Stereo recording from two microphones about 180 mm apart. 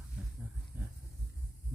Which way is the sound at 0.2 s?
5° right (ahead or behind).